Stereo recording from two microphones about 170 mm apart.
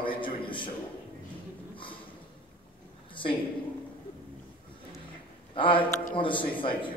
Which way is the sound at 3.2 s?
30° left (ahead or behind).